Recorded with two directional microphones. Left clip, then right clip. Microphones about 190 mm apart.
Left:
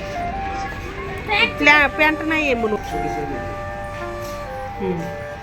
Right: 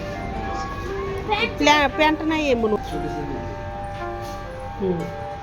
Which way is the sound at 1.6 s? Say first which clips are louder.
Left 2 dB; 10° right (ahead or behind).